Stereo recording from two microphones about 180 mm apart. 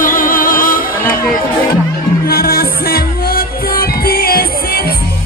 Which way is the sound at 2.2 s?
55° left (ahead or behind).